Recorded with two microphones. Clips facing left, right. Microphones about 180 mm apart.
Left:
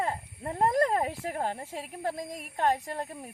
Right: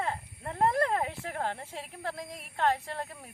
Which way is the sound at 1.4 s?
15° left (ahead or behind).